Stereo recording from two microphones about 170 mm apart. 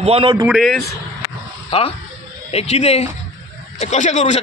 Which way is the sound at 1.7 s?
30° left (ahead or behind).